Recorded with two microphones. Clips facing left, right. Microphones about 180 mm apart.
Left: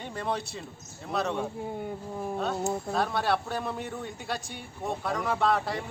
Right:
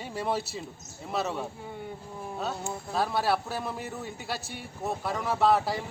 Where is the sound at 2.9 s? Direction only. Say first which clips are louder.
Right 3 dB; 5° right (ahead or behind).